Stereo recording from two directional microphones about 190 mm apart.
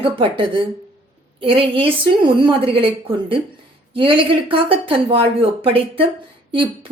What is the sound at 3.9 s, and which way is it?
Speech, 25° right (ahead or behind).